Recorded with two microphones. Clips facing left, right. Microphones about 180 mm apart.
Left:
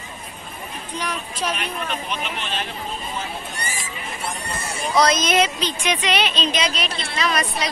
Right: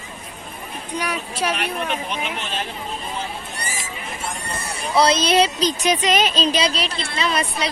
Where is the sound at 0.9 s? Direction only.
10° right (ahead or behind).